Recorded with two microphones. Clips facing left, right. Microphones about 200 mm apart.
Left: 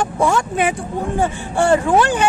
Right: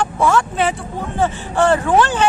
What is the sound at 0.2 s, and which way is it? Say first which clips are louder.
Speech: right 1 dB; 15° left (ahead or behind).